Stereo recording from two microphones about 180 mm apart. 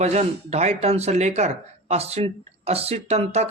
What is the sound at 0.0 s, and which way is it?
Speech, 35° right (ahead or behind).